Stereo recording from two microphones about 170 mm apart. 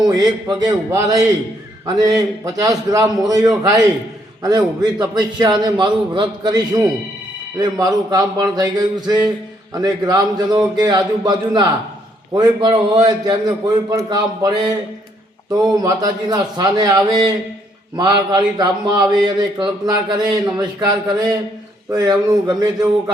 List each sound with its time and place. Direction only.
0.1 s a man's voice: 25° right (ahead or behind)
7.6 s a man's voice: 25° right (ahead or behind)